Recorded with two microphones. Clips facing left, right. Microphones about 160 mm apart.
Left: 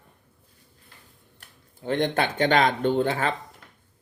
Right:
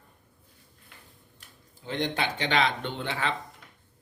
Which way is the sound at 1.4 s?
60° left (ahead or behind).